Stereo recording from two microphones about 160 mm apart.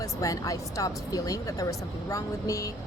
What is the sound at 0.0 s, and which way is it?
Speech, 20° left (ahead or behind).